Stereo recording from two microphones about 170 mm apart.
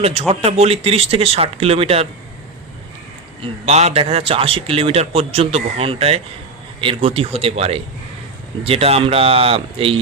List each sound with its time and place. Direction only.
0.0 s a man's voice: 35° right (ahead or behind)
3.4 s a man's voice: 40° right (ahead or behind)